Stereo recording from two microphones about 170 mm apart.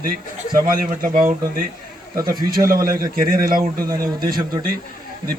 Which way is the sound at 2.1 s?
25° right (ahead or behind).